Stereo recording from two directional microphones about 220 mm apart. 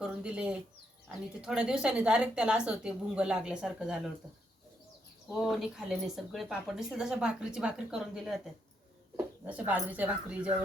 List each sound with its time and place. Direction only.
0.0 s bird: 5° right (ahead or behind)
1.0 s a woman's voice: 5° right (ahead or behind)
5.3 s a woman's voice: centre (ahead or behind)